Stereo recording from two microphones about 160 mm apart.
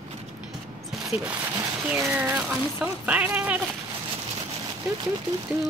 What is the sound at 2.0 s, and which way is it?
Speech, 5° right (ahead or behind).